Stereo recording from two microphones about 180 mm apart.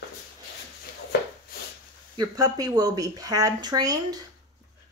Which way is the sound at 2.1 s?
20° right (ahead or behind).